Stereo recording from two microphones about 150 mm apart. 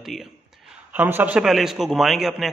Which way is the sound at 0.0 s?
Centre (ahead or behind).